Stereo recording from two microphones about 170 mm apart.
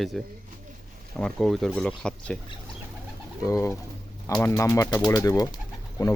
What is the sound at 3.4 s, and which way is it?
Speech, 20° left (ahead or behind).